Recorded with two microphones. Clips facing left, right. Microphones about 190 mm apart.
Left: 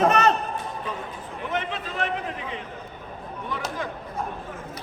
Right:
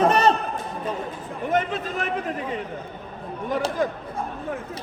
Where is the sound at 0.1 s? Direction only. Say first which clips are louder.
Right 2 dB; 30° right (ahead or behind).